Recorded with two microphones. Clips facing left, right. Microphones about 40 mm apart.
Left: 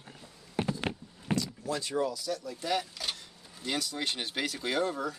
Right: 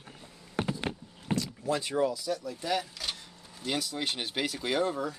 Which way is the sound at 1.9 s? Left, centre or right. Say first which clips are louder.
Right 1 dB; centre.